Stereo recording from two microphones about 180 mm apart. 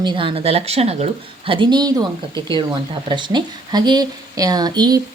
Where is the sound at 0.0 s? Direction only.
25° right (ahead or behind).